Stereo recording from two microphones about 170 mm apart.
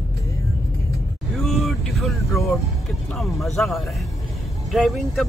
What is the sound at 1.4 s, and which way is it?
Vehicle, centre (ahead or behind).